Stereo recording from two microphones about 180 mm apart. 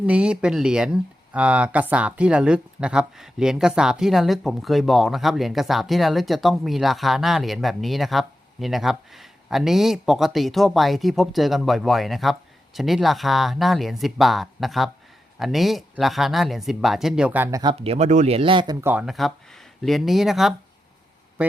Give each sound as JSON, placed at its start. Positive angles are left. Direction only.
{"t": 0.0, "sound": "speech", "side_deg": -5}
{"t": 17.6, "sound": "speech", "side_deg": -30}
{"t": 18.8, "sound": "speech", "side_deg": -10}